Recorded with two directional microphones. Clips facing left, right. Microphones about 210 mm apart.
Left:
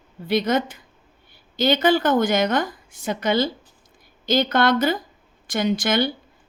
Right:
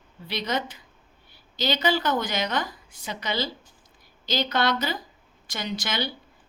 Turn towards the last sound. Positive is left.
turn(degrees=50)  # may be behind; listen again after turning